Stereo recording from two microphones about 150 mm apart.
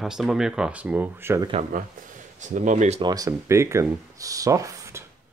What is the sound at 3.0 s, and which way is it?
Speech, 25° right (ahead or behind).